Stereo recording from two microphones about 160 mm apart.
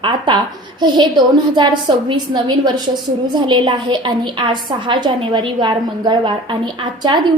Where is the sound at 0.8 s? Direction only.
25° right (ahead or behind).